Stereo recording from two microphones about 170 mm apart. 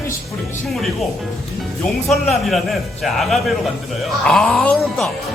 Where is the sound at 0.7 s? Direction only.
Centre (ahead or behind).